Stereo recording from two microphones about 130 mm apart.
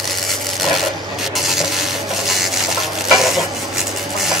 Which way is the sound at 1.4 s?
Centre (ahead or behind).